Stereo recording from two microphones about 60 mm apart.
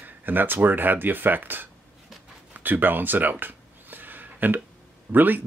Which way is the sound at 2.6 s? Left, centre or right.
Right.